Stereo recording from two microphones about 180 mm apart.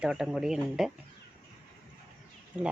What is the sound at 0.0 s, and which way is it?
Speech, 5° right (ahead or behind).